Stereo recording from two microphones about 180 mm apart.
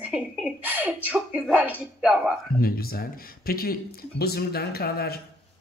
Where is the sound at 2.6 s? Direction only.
55° left (ahead or behind).